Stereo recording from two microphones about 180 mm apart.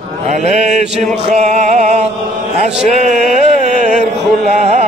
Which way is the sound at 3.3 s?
40° right (ahead or behind).